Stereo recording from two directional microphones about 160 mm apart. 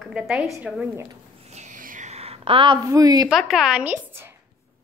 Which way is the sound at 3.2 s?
Centre (ahead or behind).